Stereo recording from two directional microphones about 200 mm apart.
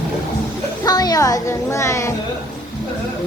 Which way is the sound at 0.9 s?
20° left (ahead or behind).